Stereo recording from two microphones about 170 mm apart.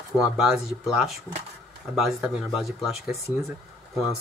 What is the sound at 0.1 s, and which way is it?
Speech, 15° left (ahead or behind).